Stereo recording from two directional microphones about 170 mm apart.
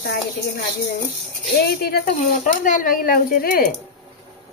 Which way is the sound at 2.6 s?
55° left (ahead or behind).